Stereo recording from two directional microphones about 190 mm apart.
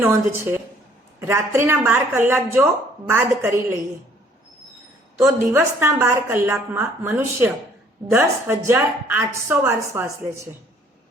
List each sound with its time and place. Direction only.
0.0 s a woman's voice: 15° right (ahead or behind)
5.5 s a woman's voice: 15° right (ahead or behind)